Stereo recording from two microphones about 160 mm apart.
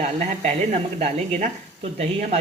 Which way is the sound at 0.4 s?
40° right (ahead or behind).